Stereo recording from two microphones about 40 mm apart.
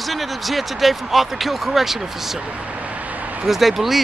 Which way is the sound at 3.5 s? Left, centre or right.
Centre.